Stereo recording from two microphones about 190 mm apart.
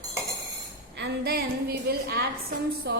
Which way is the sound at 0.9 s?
60° right (ahead or behind).